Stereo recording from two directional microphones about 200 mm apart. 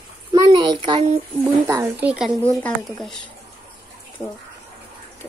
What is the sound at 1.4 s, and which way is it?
Speech, 10° right (ahead or behind).